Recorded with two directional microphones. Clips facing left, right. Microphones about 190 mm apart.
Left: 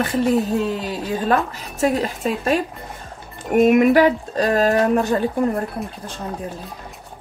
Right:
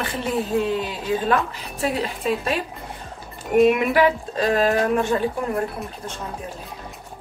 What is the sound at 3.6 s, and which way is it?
Speech, 45° left (ahead or behind).